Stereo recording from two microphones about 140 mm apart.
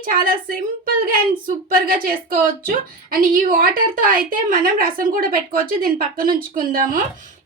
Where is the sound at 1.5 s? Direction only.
80° right.